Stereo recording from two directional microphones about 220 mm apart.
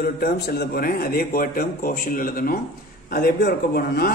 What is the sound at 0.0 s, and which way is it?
A man's voice, 45° left (ahead or behind).